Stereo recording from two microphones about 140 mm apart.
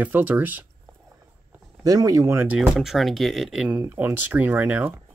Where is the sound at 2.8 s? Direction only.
Centre (ahead or behind).